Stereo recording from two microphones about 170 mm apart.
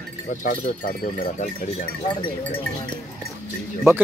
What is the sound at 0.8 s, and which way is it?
Speech, 60° left (ahead or behind).